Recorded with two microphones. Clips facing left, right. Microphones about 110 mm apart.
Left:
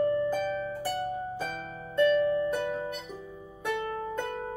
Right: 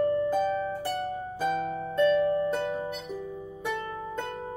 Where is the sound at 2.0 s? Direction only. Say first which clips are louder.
Right 1 dB; 20° right (ahead or behind).